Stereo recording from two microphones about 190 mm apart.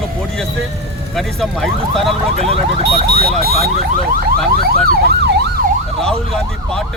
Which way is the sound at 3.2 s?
55° right (ahead or behind).